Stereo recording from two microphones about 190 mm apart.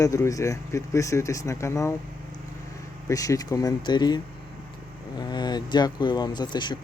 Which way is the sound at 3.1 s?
20° left (ahead or behind).